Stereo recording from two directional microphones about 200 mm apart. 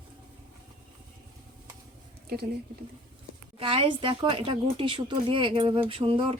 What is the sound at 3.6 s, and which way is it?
Speech, 25° right (ahead or behind).